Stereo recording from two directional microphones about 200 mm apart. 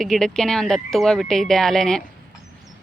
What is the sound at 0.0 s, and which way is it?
Speech, 5° left (ahead or behind).